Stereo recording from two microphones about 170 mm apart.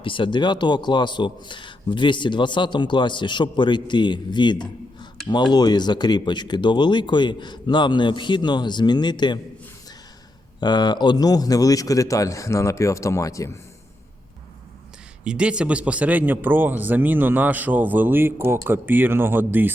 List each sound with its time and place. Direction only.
0.0 s speech: 30° left (ahead or behind)
10.6 s speech: 25° left (ahead or behind)
15.2 s speech: 5° right (ahead or behind)